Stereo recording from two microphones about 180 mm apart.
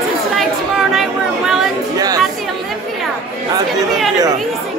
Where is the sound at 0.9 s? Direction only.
Centre (ahead or behind).